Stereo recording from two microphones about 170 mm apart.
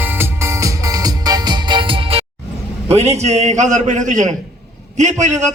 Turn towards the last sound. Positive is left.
turn(degrees=-45)  # may be behind; listen again after turning